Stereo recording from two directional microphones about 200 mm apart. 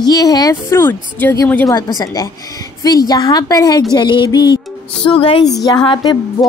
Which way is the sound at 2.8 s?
20° left (ahead or behind).